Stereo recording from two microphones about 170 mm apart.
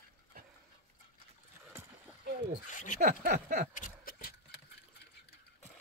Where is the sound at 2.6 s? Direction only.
50° left (ahead or behind).